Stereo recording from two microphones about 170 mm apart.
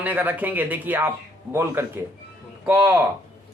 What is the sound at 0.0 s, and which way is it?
Speech, 10° right (ahead or behind).